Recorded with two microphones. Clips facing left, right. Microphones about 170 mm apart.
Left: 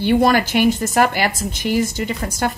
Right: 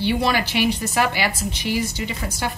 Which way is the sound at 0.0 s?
50° left (ahead or behind).